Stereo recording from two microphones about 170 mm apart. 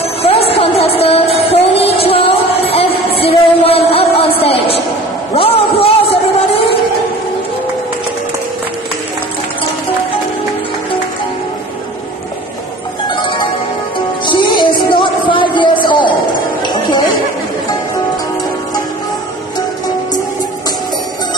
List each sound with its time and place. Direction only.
0.2 s music: 35° left (ahead or behind)
5.3 s a sound: 35° left (ahead or behind)
6.5 s music: 35° left (ahead or behind)
13.1 s music: 30° left (ahead or behind)